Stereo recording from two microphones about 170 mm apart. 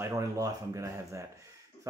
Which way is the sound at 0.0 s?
15° right (ahead or behind).